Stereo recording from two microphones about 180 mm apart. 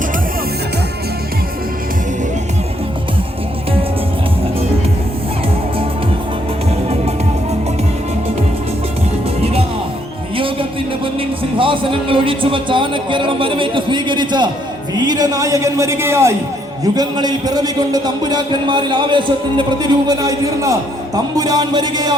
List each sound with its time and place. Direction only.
9.4 s music: 35° right (ahead or behind)
11.5 s a man's voice: 30° right (ahead or behind)